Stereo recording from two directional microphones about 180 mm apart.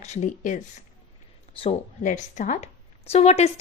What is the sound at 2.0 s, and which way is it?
A woman's voice, 45° left (ahead or behind).